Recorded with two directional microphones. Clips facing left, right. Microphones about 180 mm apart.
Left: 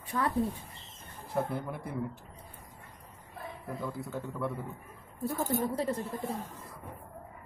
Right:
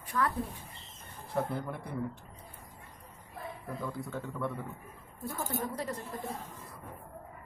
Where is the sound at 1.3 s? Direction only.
5° left (ahead or behind).